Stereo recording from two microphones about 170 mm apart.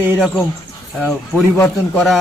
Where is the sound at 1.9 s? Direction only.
Centre (ahead or behind).